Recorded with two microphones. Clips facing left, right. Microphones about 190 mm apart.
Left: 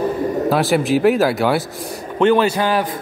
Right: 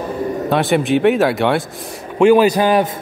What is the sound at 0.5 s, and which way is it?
A man's voice, centre (ahead or behind).